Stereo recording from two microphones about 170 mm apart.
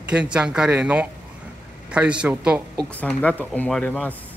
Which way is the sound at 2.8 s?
5° left (ahead or behind).